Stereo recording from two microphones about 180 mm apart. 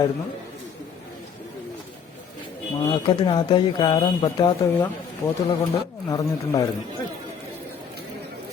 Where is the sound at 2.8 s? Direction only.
25° left (ahead or behind).